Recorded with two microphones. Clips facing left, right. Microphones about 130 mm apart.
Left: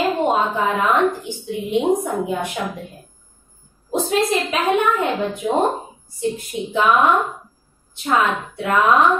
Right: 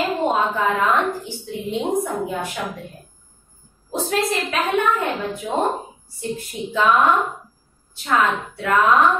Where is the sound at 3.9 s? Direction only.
20° left (ahead or behind).